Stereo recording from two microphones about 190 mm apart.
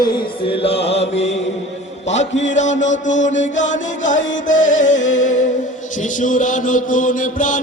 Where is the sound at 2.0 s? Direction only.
35° left (ahead or behind).